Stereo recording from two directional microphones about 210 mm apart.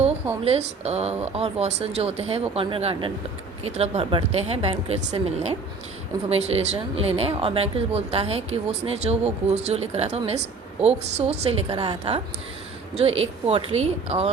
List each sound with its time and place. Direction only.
0.4 s speech: 30° right (ahead or behind)